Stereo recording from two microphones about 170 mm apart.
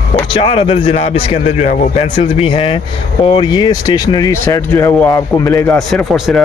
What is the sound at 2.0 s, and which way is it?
Speech, 35° left (ahead or behind).